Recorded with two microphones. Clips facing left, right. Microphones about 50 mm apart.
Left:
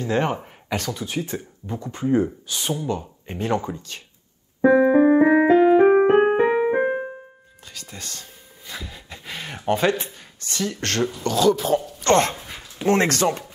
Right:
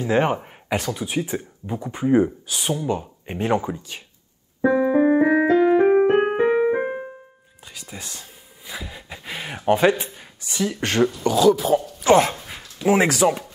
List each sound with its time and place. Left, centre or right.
0.0 s speech: centre
4.6 s keyboard: centre
5.0 s music: centre
6.1 s keyboard: centre
7.6 s a sound: centre
11.2 s speech: centre